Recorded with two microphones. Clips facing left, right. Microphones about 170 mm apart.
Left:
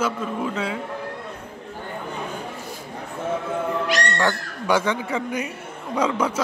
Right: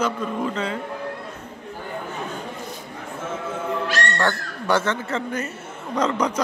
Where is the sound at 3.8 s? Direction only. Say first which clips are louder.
Right 1 dB; 15° left (ahead or behind).